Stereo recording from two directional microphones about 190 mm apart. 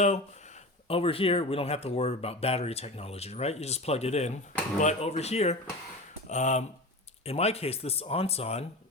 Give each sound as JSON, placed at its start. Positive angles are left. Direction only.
{"t": 0.9, "sound": "speech", "side_deg": 30}